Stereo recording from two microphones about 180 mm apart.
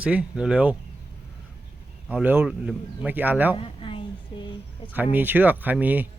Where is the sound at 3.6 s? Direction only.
30° left (ahead or behind).